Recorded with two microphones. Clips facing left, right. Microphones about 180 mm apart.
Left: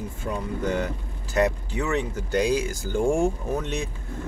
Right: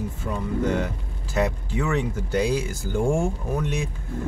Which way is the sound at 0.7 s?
10° right (ahead or behind).